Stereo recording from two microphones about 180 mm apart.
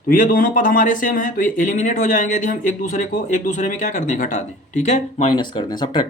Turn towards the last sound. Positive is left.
turn(degrees=25)  # may be behind; listen again after turning